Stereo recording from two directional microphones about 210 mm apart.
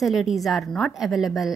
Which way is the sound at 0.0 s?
Centre (ahead or behind).